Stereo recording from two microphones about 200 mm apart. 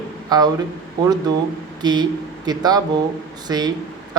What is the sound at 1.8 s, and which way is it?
Speech, 20° right (ahead or behind).